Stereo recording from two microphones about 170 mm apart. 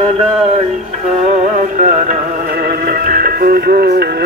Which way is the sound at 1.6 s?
45° right (ahead or behind).